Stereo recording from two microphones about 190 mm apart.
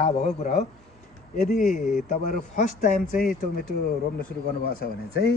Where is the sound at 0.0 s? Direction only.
30° left (ahead or behind).